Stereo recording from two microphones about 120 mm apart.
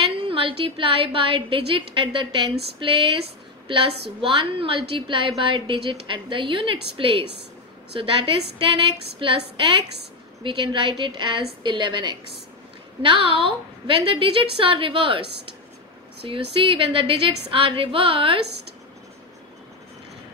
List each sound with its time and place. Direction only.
0.3 s a woman's voice: 45° right (ahead or behind)
16.3 s a woman's voice: 45° right (ahead or behind)